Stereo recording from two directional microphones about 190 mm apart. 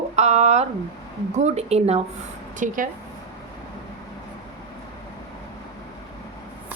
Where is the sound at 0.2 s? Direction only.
35° right (ahead or behind).